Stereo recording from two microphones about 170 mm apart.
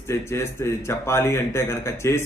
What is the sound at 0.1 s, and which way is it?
A man's voice, 15° left (ahead or behind).